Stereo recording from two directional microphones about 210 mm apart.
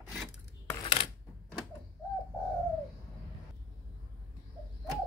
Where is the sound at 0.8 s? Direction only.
25° left (ahead or behind).